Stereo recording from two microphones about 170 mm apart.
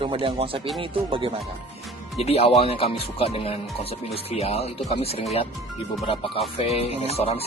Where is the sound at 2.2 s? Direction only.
35° left (ahead or behind).